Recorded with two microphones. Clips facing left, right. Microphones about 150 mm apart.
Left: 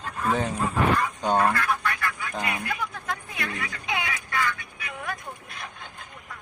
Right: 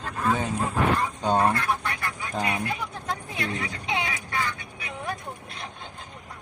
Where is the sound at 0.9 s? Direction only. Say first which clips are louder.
Even; 30° right (ahead or behind).